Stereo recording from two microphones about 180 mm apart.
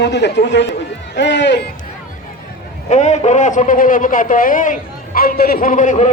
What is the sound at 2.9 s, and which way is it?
A man's voice, 40° left (ahead or behind).